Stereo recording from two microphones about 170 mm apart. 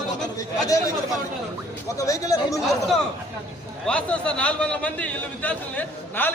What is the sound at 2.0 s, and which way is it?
Speech, 20° left (ahead or behind).